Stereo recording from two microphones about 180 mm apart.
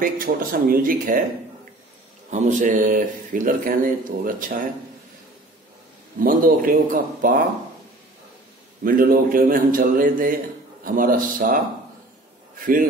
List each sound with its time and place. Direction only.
0.0 s a man's voice: 55° right (ahead or behind)
2.3 s a man's voice: 45° right (ahead or behind)
6.1 s a man's voice: 50° right (ahead or behind)
8.8 s a man's voice: 50° right (ahead or behind)